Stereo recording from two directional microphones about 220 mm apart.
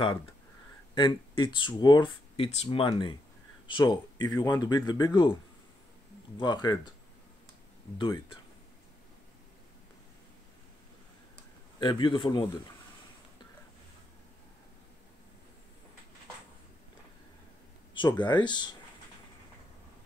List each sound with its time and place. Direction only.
0.9 s speech: 20° left (ahead or behind)
6.3 s speech: 20° left (ahead or behind)
8.0 s speech: 25° left (ahead or behind)
11.8 s speech: 20° left (ahead or behind)
17.9 s speech: 20° left (ahead or behind)